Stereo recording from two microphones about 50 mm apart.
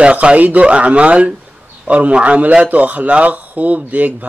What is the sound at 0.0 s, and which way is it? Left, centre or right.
Speech, right.